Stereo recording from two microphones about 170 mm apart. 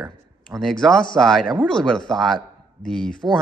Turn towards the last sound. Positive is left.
turn(degrees=5)  # may be behind; listen again after turning